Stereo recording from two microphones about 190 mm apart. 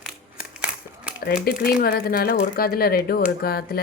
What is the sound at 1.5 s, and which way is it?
Speech, 55° left (ahead or behind).